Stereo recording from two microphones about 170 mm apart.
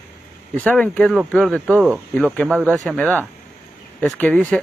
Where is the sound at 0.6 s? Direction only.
5° left (ahead or behind).